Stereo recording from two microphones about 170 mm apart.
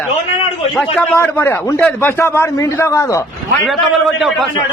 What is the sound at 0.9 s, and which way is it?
A man's voice, 10° left (ahead or behind).